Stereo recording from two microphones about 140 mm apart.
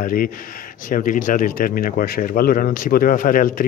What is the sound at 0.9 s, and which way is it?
Speech, 75° left (ahead or behind).